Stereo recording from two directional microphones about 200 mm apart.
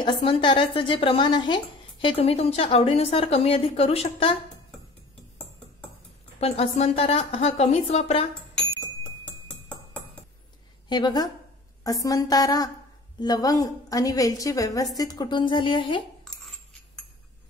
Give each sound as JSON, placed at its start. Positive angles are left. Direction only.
{"t": 0.0, "sound": "speech", "side_deg": 25}
{"t": 6.4, "sound": "speech", "side_deg": 30}
{"t": 9.5, "sound": "music", "side_deg": 5}
{"t": 10.9, "sound": "a woman's voice", "side_deg": 20}